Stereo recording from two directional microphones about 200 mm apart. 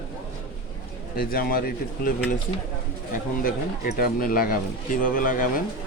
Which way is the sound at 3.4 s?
50° left (ahead or behind).